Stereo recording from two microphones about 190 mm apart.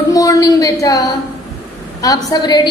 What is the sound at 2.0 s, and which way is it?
Speech, 20° left (ahead or behind).